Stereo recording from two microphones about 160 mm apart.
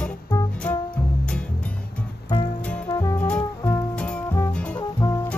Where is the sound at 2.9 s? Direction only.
20° left (ahead or behind).